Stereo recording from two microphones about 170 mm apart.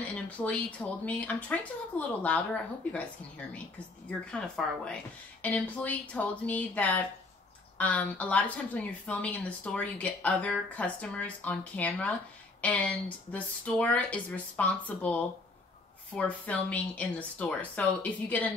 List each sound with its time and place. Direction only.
0.1 s a woman's voice: 10° left (ahead or behind)